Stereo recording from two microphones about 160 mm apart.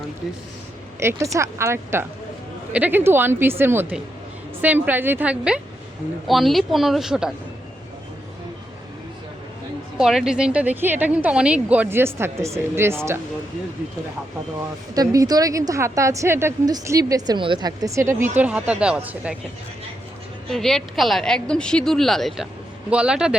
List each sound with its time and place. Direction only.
0.9 s a woman's voice: 20° right (ahead or behind)
10.0 s a woman's voice: 5° right (ahead or behind)
14.9 s a woman's voice: 20° right (ahead or behind)
20.5 s a woman's voice: centre (ahead or behind)